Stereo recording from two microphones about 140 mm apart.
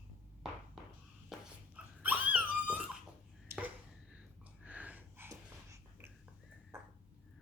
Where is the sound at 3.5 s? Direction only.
10° right (ahead or behind).